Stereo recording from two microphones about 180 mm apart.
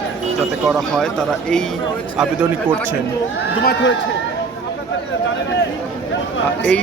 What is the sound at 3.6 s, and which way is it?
Speech, 75° left (ahead or behind).